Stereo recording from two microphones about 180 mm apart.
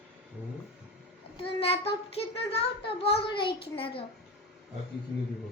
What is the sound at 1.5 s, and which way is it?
A child's voice, 35° left (ahead or behind).